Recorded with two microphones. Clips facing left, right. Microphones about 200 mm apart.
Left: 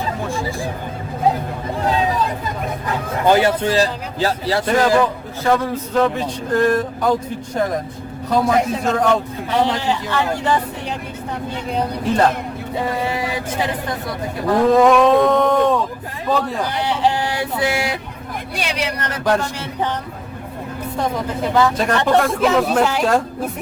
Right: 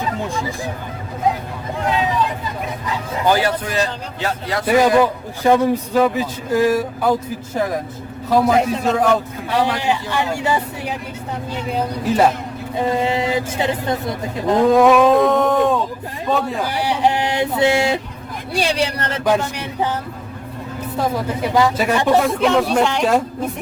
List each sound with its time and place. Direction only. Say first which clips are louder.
1.8 s vehicle: even; 35° left (ahead or behind)
2.8 s speech: left 1 dB; 55° left (ahead or behind)
3.2 s speech: left 3 dB; 25° left (ahead or behind)
4.6 s speech: right 3 dB; 10° right (ahead or behind)
9.6 s speech: left 1 dB; 20° left (ahead or behind)
9.8 s speech: even; 15° right (ahead or behind)
13.0 s speech: right 4 dB; 25° right (ahead or behind)
14.7 s speech: even; centre (ahead or behind)
16.8 s a sound: right 1 dB; 15° right (ahead or behind)
18.5 s speech: right 5 dB; 30° right (ahead or behind)
19.4 s speech: right 1 dB; 15° right (ahead or behind)
21.0 s speech: right 1 dB; 10° right (ahead or behind)